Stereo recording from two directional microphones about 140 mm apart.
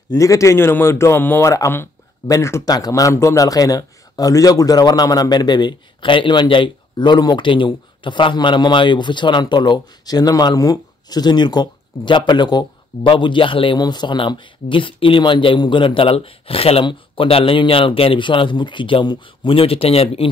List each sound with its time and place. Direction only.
0.1 s a man's voice: 20° left (ahead or behind); by 20.2 s 45° left (ahead or behind)